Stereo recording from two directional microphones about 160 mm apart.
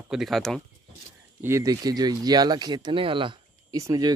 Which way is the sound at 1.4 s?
20° right (ahead or behind).